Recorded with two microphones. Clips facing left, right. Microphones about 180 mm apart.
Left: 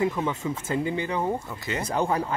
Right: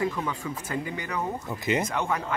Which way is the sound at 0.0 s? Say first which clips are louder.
Left 3 dB; 20° left (ahead or behind).